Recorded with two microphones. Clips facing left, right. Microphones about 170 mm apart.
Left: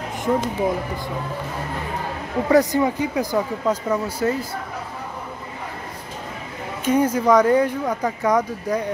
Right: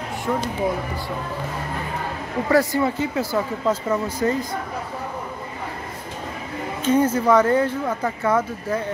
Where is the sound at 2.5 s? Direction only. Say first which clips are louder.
Left 2 dB; 20° left (ahead or behind).